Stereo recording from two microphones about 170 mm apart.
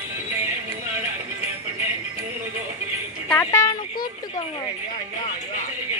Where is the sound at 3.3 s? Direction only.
15° left (ahead or behind).